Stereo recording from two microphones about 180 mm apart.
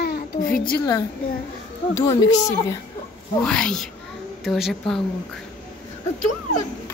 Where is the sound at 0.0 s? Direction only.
60° left (ahead or behind).